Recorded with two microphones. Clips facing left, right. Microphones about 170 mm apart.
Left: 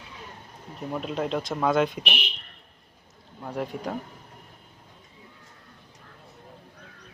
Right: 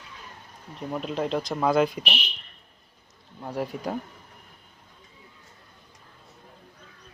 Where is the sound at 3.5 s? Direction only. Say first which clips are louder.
Right 1 dB; 5° right (ahead or behind).